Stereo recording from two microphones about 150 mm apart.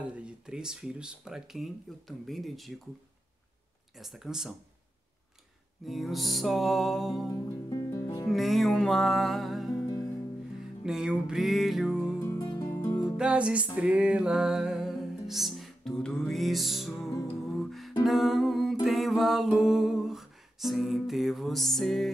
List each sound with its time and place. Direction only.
0.0 s music: 5° right (ahead or behind)
4.0 s music: centre (ahead or behind)
5.9 s music: centre (ahead or behind)
7.2 s music: 20° left (ahead or behind)
8.3 s music: centre (ahead or behind)
10.8 s music: 5° right (ahead or behind)
12.2 s music: 20° left (ahead or behind)
13.2 s music: 5° right (ahead or behind)